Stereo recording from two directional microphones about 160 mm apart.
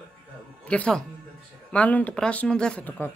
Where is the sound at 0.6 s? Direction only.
5° left (ahead or behind).